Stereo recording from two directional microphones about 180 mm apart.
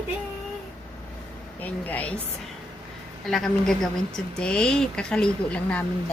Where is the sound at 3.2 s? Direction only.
5° left (ahead or behind).